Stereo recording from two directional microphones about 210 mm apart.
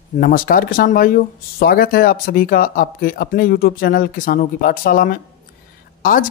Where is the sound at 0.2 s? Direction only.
40° left (ahead or behind).